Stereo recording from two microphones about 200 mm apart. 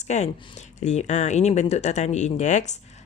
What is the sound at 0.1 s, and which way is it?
Speech, 35° left (ahead or behind).